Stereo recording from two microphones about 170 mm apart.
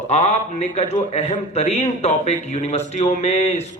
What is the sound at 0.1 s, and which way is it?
A man's voice, 40° left (ahead or behind).